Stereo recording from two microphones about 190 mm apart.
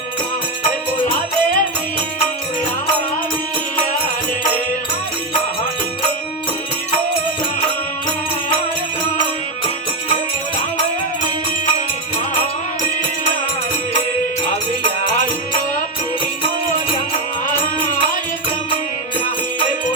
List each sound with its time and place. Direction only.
0.7 s music: 45° left (ahead or behind)
15.0 s music: 40° left (ahead or behind)